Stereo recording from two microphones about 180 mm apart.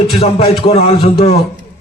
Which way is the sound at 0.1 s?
35° left (ahead or behind).